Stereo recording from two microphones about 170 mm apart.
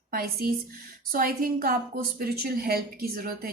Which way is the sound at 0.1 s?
60° right (ahead or behind).